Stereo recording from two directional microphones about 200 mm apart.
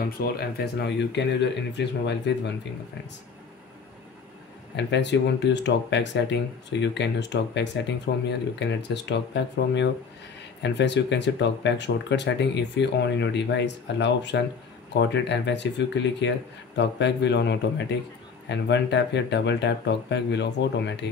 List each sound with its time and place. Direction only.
0.2 s speech: 50° left (ahead or behind)
4.7 s speech: 60° left (ahead or behind)